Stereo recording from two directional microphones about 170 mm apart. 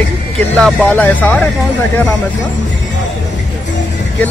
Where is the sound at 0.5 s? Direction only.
5° left (ahead or behind).